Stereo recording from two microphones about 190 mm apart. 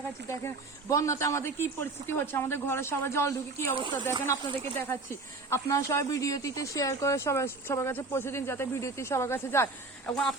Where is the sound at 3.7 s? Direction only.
25° right (ahead or behind).